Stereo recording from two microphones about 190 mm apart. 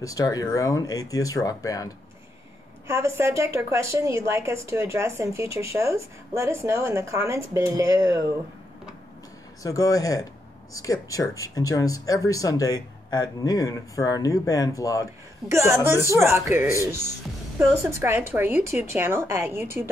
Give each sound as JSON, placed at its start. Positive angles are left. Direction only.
{"t": 0.0, "sound": "speech", "side_deg": 20}
{"t": 2.9, "sound": "a woman's voice", "side_deg": -15}
{"t": 9.6, "sound": "speech", "side_deg": 20}
{"t": 15.4, "sound": "a woman's voice", "side_deg": -15}